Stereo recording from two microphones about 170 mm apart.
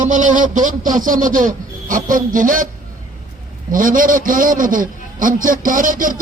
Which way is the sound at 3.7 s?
55° right (ahead or behind).